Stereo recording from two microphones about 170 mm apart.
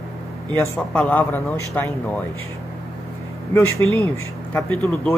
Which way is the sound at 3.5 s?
10° left (ahead or behind).